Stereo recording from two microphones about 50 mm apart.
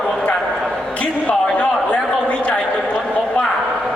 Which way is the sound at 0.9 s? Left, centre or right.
Left.